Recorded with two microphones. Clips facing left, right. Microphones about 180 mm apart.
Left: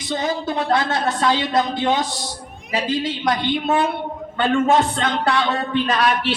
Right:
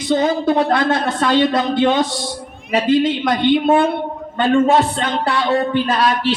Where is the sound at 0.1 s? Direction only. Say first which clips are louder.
Right 7 dB; 55° right (ahead or behind).